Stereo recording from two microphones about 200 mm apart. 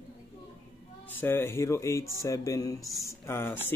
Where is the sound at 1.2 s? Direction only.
10° left (ahead or behind).